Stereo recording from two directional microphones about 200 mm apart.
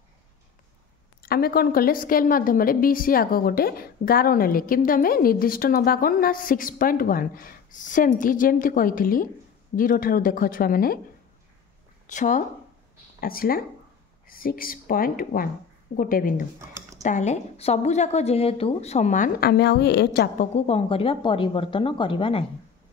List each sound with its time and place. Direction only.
1.2 s a woman's voice: 50° left (ahead or behind)
12.1 s a woman's voice: 40° left (ahead or behind)
16.5 s typing: 15° right (ahead or behind)
17.0 s a woman's voice: 35° left (ahead or behind)
19.5 s a woman's voice: 55° left (ahead or behind)
20.5 s speech: 30° left (ahead or behind)